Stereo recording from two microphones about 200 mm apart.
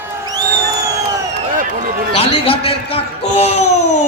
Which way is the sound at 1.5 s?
45° right (ahead or behind).